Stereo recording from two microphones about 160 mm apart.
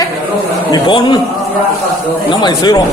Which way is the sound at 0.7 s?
30° left (ahead or behind).